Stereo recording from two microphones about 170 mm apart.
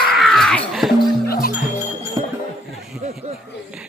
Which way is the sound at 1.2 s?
65° left (ahead or behind).